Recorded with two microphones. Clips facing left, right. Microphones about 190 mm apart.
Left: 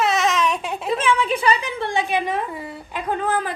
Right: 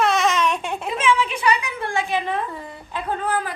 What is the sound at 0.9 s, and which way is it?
A woman's voice, 35° left (ahead or behind).